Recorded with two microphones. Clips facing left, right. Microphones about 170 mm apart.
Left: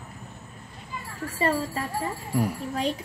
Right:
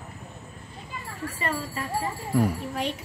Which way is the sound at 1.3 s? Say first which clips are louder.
Left 7 dB; 35° left (ahead or behind).